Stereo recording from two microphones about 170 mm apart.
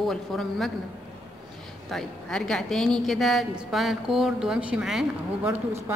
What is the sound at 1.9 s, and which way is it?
A woman's voice, 5° left (ahead or behind).